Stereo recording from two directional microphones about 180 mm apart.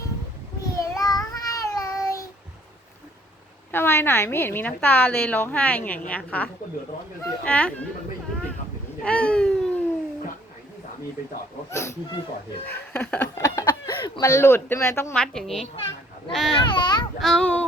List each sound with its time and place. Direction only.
0.6 s a sound: 20° left (ahead or behind)
3.7 s a woman's voice: 10° left (ahead or behind)
9.0 s a sound: 5° left (ahead or behind)
11.7 s a woman's voice: 15° left (ahead or behind)
13.3 s a sound: 15° left (ahead or behind)
14.0 s a woman's voice: 20° left (ahead or behind); by 15.6 s centre (ahead or behind)
16.3 s child singing: 5° left (ahead or behind)
16.6 s speech: 25° left (ahead or behind)
17.2 s child singing: centre (ahead or behind)